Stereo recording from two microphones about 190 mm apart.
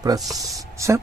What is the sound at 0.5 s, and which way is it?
Speech, 15° right (ahead or behind).